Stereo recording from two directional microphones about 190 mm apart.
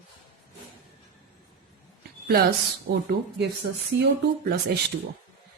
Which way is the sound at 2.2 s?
55° right (ahead or behind).